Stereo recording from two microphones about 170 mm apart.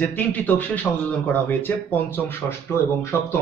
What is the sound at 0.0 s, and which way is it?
Speech, 10° left (ahead or behind).